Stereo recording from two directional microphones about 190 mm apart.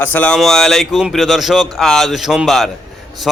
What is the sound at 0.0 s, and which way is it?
A man's voice, 10° left (ahead or behind).